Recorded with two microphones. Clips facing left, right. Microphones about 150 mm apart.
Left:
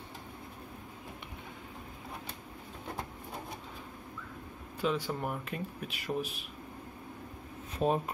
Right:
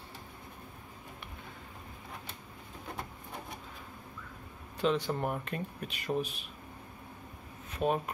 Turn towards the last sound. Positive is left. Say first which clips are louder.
# left 1 dB
turn(degrees=30)  # may be behind; listen again after turning